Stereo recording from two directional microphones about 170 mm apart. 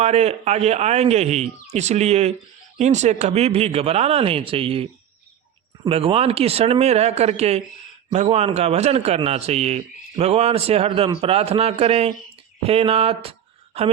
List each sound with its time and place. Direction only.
0.0 s a man's voice: 40° right (ahead or behind)
5.9 s a man's voice: 35° right (ahead or behind)